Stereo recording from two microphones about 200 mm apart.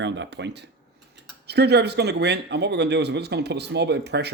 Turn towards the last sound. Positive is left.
turn(degrees=-55)  # may be behind; listen again after turning